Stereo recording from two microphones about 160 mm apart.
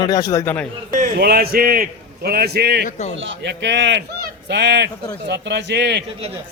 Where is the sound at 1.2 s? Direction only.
75° right (ahead or behind); by 6.0 s 90° right.